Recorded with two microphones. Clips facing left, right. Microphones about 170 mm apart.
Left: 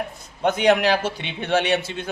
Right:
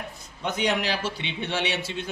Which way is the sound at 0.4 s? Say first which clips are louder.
Left 8 dB; 55° left (ahead or behind).